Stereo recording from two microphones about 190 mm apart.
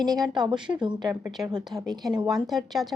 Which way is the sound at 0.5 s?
5° right (ahead or behind).